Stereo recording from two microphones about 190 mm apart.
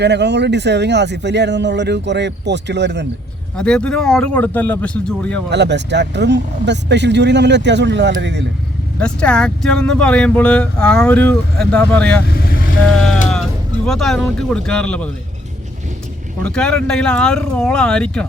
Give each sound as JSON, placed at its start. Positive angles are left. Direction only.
{"t": 0.0, "sound": "speech", "side_deg": -65}
{"t": 3.6, "sound": "speech", "side_deg": 5}
{"t": 5.5, "sound": "speech", "side_deg": -65}
{"t": 9.0, "sound": "speech", "side_deg": 5}
{"t": 16.4, "sound": "speech", "side_deg": 5}